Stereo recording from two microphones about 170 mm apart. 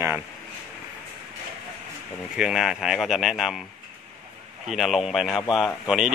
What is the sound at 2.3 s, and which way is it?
Speech, centre (ahead or behind).